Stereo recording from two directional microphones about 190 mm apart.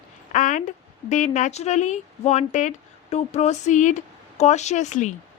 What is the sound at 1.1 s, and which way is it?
Speech, 40° left (ahead or behind).